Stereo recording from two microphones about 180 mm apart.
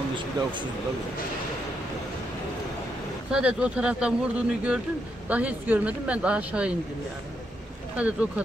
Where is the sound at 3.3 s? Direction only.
5° right (ahead or behind).